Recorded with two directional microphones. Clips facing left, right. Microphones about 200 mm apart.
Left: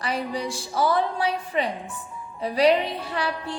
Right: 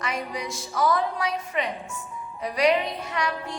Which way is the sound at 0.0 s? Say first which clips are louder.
Left 3 dB; 30° left (ahead or behind).